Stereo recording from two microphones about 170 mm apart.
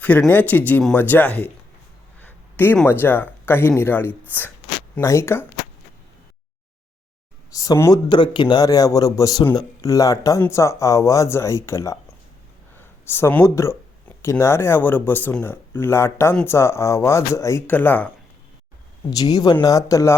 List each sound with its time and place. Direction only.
0.0 s speech: 10° left (ahead or behind)
7.5 s speech: 20° left (ahead or behind)
19.1 s speech: 20° left (ahead or behind)